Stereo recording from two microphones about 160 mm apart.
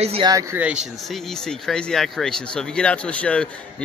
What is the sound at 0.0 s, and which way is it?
Speech, 40° right (ahead or behind).